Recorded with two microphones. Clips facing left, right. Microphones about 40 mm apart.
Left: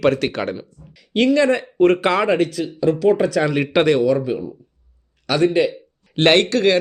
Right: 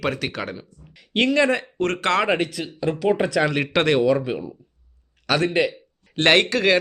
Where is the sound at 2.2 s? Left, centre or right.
Centre.